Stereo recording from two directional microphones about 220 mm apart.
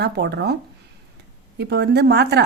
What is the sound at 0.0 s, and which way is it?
Speech, 50° right (ahead or behind).